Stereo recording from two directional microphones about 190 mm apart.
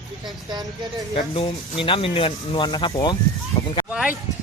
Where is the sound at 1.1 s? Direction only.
30° left (ahead or behind).